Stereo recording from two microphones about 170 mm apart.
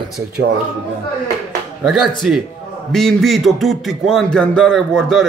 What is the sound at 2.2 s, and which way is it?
Beatboxing, 5° right (ahead or behind).